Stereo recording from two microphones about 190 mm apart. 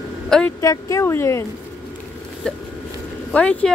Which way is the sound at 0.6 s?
15° left (ahead or behind).